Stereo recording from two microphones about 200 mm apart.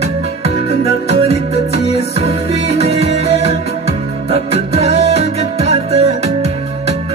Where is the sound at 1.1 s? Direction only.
30° right (ahead or behind).